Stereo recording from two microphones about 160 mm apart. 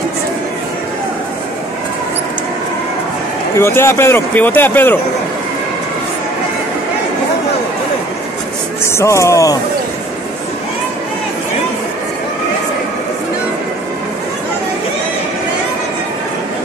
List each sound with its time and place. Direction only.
3.5 s speech: 15° left (ahead or behind)
8.8 s speech: 15° left (ahead or behind)